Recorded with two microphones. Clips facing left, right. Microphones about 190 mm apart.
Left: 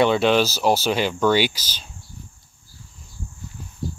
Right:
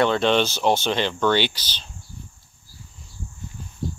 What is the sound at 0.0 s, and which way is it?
Speech, 10° left (ahead or behind).